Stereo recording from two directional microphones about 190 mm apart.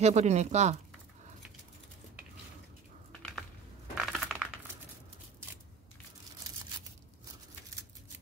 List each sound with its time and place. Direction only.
0.0 s speech: 35° right (ahead or behind)
3.9 s coin: centre (ahead or behind)